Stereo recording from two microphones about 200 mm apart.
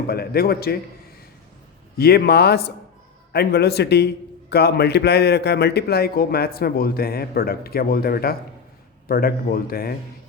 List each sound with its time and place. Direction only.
0.1 s a man's voice: 50° left (ahead or behind)
2.0 s a man's voice: 50° left (ahead or behind)